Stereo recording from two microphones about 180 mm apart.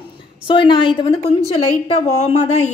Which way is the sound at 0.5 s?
25° left (ahead or behind).